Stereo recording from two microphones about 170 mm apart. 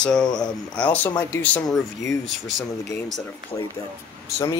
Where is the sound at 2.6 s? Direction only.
Centre (ahead or behind).